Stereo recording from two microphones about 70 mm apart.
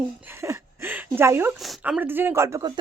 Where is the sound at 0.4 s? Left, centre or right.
Right.